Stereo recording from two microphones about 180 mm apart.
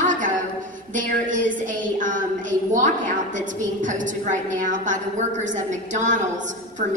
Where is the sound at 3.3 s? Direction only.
45° right (ahead or behind).